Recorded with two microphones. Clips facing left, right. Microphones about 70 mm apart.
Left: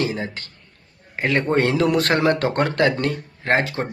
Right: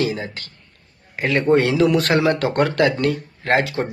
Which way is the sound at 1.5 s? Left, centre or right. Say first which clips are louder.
Right 4 dB; left.